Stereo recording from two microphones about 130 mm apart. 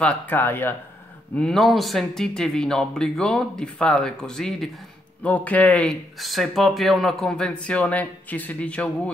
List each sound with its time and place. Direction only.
0.0 s speech: 15° left (ahead or behind)
1.3 s speech: 5° left (ahead or behind)
6.1 s speech: centre (ahead or behind)